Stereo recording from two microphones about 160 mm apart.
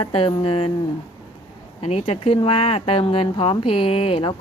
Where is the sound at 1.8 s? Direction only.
40° left (ahead or behind).